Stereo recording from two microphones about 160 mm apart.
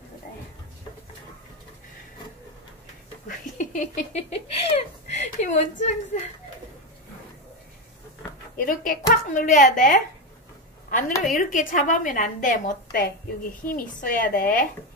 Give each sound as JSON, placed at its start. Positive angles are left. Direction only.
{"t": 3.3, "sound": "a sound", "side_deg": 50}
{"t": 8.6, "sound": "a woman's voice", "side_deg": 60}
{"t": 11.3, "sound": "a woman's voice", "side_deg": 55}